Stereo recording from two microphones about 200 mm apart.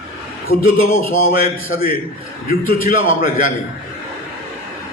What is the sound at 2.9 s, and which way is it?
Speech, 45° left (ahead or behind).